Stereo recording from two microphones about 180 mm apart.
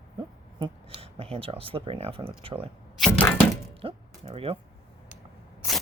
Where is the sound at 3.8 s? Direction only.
35° right (ahead or behind).